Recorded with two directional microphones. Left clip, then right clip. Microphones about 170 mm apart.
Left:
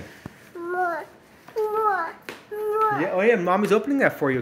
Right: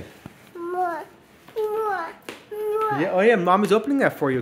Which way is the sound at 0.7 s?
Centre (ahead or behind).